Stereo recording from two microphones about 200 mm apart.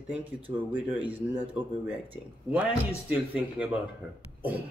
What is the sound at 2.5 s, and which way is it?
Speech, 5° right (ahead or behind).